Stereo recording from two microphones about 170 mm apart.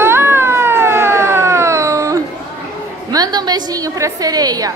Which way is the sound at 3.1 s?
25° right (ahead or behind).